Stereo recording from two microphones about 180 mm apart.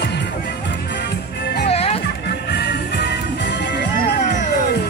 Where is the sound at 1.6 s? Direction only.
35° left (ahead or behind).